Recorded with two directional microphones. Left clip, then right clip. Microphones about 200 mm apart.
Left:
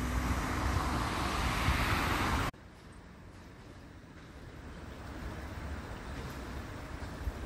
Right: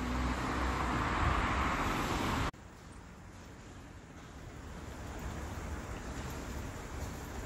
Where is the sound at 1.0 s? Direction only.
15° left (ahead or behind); by 2.5 s 35° left (ahead or behind).